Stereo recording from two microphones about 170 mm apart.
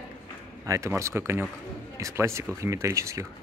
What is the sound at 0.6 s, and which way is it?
Speech, 15° right (ahead or behind).